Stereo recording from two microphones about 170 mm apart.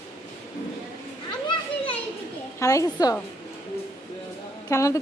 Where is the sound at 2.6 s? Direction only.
20° left (ahead or behind).